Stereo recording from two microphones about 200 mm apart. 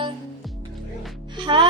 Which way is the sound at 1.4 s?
25° right (ahead or behind).